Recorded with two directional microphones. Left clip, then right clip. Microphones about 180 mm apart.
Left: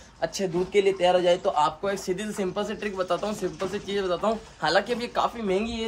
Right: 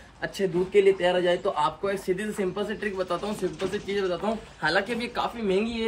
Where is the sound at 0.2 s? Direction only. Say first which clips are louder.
Even; 45° left (ahead or behind).